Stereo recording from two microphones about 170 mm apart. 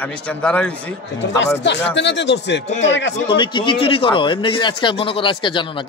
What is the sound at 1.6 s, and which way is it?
Speech, 90° left.